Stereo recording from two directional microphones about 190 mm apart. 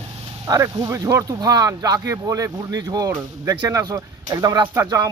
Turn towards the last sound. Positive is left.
turn(degrees=-20)  # may be behind; listen again after turning